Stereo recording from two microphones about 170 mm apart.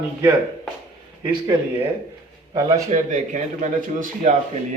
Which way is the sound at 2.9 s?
45° right (ahead or behind).